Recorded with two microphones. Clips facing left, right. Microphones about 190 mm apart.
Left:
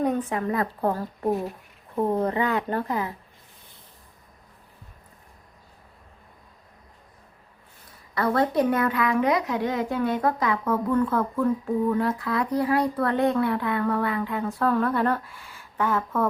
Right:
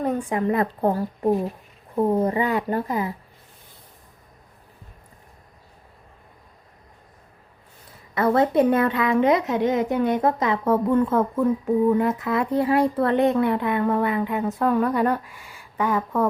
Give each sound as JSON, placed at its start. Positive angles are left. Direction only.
{"t": 0.0, "sound": "a woman's voice", "side_deg": -10}
{"t": 8.1, "sound": "a woman's voice", "side_deg": -25}